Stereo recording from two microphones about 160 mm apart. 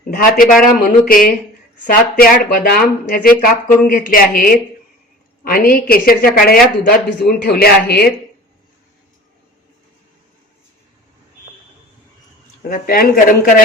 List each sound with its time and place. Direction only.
0.1 s speech: 60° left (ahead or behind)
12.6 s speech: 60° left (ahead or behind)